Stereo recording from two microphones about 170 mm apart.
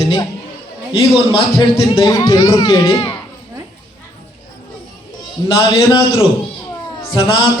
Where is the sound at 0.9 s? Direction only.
35° left (ahead or behind).